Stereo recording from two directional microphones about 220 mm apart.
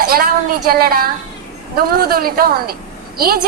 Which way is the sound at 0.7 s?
45° right (ahead or behind).